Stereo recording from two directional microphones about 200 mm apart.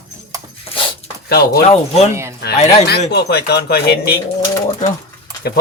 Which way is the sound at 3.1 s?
55° left (ahead or behind).